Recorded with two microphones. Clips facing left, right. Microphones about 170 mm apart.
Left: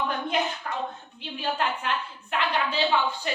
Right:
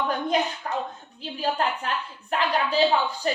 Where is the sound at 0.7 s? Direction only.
35° right (ahead or behind).